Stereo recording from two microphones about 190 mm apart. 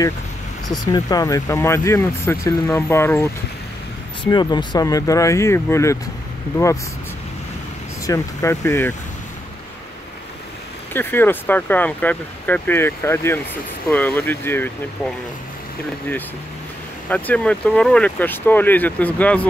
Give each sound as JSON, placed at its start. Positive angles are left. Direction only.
{"t": 0.7, "sound": "speech", "side_deg": 20}
{"t": 4.2, "sound": "speech", "side_deg": 25}
{"t": 8.1, "sound": "speech", "side_deg": 15}
{"t": 10.9, "sound": "speech", "side_deg": 10}
{"t": 17.1, "sound": "speech", "side_deg": 5}